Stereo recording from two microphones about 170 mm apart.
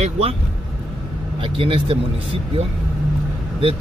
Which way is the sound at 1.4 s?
30° right (ahead or behind).